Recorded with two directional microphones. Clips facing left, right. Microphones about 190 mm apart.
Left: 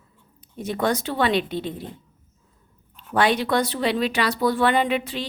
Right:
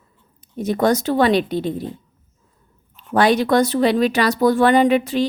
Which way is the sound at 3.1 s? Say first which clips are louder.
Right 5 dB; 40° right (ahead or behind).